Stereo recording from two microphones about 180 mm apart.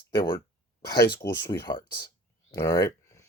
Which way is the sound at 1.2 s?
15° left (ahead or behind).